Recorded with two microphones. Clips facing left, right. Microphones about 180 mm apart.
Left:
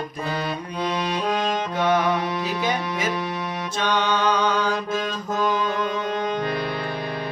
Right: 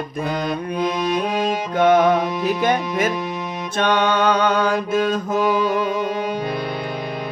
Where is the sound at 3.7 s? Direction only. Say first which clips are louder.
Right 5 dB; 55° right (ahead or behind).